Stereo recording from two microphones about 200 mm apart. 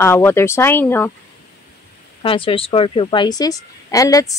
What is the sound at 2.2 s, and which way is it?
A woman's voice, 25° left (ahead or behind).